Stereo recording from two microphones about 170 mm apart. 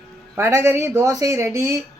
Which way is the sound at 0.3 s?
15° right (ahead or behind).